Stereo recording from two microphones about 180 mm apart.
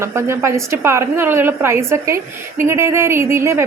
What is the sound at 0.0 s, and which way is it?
A woman's voice, 15° right (ahead or behind).